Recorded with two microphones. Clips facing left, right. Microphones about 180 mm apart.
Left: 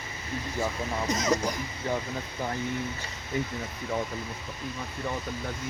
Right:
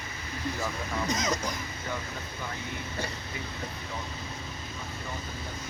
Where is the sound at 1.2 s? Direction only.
10° left (ahead or behind).